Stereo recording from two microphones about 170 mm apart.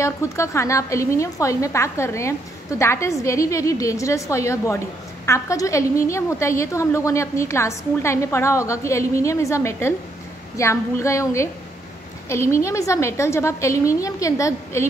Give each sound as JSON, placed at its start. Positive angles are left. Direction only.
{"t": 0.0, "sound": "a woman's voice", "side_deg": 15}